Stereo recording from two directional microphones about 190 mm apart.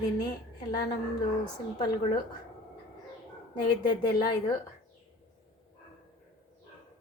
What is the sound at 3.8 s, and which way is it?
Speech, 50° left (ahead or behind).